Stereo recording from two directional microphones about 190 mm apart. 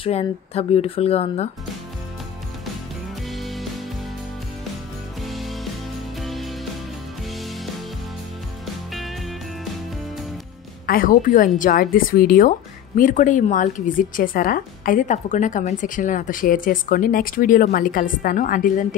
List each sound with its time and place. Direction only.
0.0 s speech: 30° left (ahead or behind)
3.3 s music: centre (ahead or behind)
5.2 s music: centre (ahead or behind)
10.9 s a woman's voice: 45° left (ahead or behind)